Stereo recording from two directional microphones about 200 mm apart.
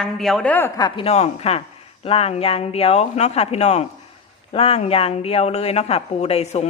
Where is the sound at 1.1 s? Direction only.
30° left (ahead or behind).